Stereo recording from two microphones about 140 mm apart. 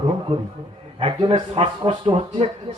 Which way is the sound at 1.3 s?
40° right (ahead or behind).